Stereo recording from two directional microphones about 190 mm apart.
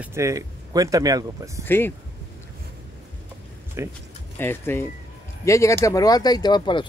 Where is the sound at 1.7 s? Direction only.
10° left (ahead or behind).